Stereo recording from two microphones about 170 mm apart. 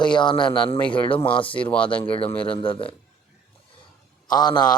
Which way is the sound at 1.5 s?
5° left (ahead or behind).